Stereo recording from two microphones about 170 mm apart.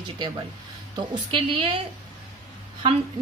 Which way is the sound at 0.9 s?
30° right (ahead or behind).